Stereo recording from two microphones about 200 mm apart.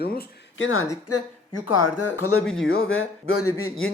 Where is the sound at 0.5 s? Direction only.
80° left.